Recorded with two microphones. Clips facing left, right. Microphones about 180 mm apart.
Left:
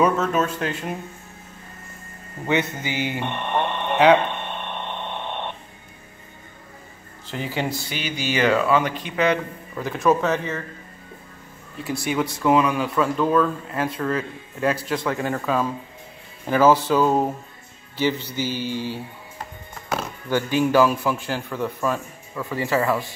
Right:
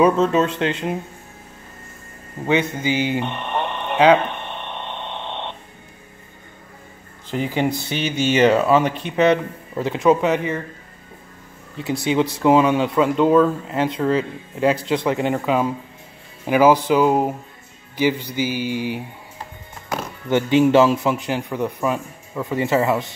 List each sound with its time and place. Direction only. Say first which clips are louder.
0.2 s speech: right 5 dB; 25° right (ahead or behind)
2.4 s speech: right 4 dB; 15° right (ahead or behind)
5.0 s a sound: even; 10° left (ahead or behind)
7.2 s speech: right 5 dB; 15° right (ahead or behind)
11.8 s speech: right 5 dB; 20° right (ahead or behind)